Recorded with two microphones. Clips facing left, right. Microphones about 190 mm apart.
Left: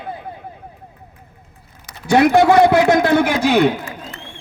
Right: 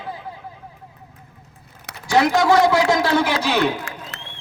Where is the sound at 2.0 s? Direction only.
60° left (ahead or behind).